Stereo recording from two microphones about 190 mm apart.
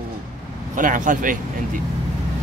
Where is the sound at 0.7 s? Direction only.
45° right (ahead or behind).